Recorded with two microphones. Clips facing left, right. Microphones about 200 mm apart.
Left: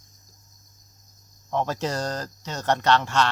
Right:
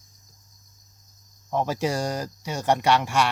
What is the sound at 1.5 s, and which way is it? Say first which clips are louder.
Speech: right 1 dB; 10° right (ahead or behind).